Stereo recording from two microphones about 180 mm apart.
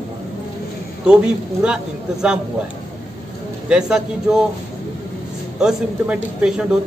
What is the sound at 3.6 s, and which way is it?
Speech, 5° right (ahead or behind).